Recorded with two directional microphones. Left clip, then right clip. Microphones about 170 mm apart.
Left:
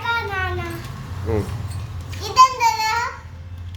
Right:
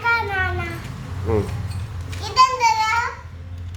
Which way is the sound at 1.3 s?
10° right (ahead or behind).